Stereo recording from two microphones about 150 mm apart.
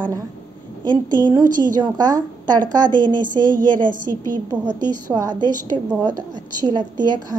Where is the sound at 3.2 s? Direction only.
60° right (ahead or behind).